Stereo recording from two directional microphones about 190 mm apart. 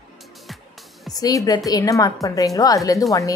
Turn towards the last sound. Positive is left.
turn(degrees=20)  # may be behind; listen again after turning